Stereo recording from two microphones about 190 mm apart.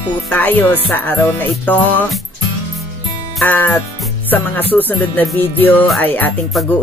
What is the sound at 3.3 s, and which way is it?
Music, 10° left (ahead or behind).